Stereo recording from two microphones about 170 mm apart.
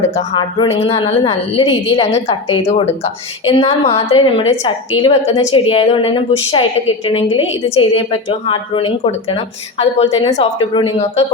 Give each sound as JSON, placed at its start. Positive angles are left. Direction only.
{"t": 0.8, "sound": "a woman's voice", "side_deg": 35}